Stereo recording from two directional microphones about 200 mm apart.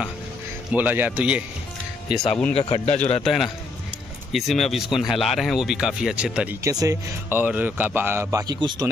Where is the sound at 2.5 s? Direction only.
30° left (ahead or behind).